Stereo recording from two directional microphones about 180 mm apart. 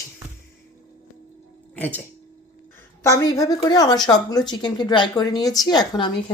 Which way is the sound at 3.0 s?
20° left (ahead or behind).